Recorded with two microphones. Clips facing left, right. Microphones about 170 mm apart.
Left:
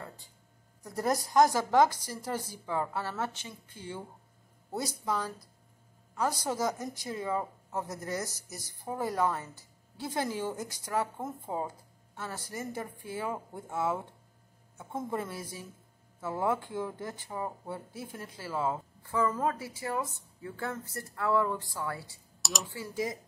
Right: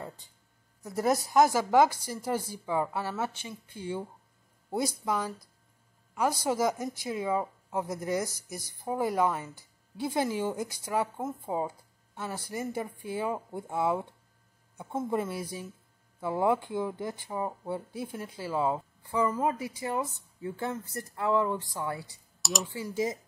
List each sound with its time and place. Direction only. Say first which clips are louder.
0.8 s speech: right 3 dB; 5° right (ahead or behind)
15.0 s speech: right 5 dB; 15° right (ahead or behind)
22.4 s speech: right 4 dB; centre (ahead or behind)
22.7 s speech: right 3 dB; 20° right (ahead or behind)